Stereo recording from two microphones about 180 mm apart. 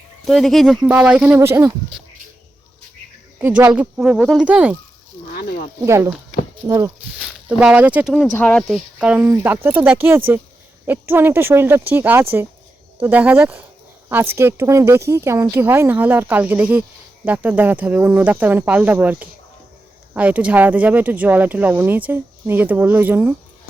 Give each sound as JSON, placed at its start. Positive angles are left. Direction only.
{"t": 0.3, "sound": "speech", "side_deg": 0}
{"t": 3.3, "sound": "speech", "side_deg": -10}
{"t": 5.3, "sound": "snake", "side_deg": 60}
{"t": 5.8, "sound": "speech", "side_deg": -15}
{"t": 7.2, "sound": "speech", "side_deg": -5}
{"t": 8.3, "sound": "speech", "side_deg": 10}
{"t": 8.7, "sound": "speech", "side_deg": -5}